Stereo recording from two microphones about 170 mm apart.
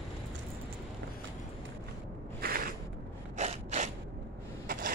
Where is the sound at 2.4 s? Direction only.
60° right (ahead or behind).